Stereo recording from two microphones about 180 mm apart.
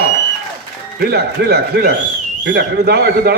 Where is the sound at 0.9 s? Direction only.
60° right (ahead or behind).